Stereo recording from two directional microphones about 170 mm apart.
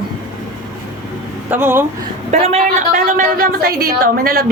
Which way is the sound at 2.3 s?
40° right (ahead or behind).